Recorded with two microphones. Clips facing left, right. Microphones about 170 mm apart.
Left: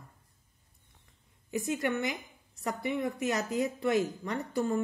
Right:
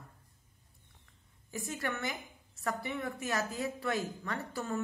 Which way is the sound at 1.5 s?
20° left (ahead or behind).